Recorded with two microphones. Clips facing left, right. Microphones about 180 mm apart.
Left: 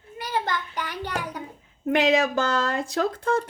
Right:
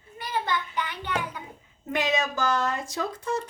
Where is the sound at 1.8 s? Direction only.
65° left (ahead or behind).